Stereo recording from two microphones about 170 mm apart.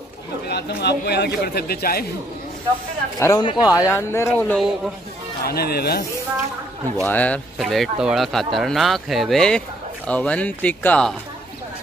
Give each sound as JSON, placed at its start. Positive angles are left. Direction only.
{"t": 0.5, "sound": "a man's voice", "side_deg": 75}
{"t": 3.2, "sound": "speech", "side_deg": 20}
{"t": 5.5, "sound": "a man's voice", "side_deg": 65}
{"t": 7.0, "sound": "speech", "side_deg": 10}